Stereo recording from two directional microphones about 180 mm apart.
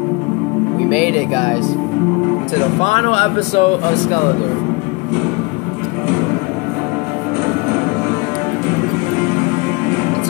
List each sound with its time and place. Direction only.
0.8 s speech: 40° left (ahead or behind)
2.8 s speech: 40° left (ahead or behind)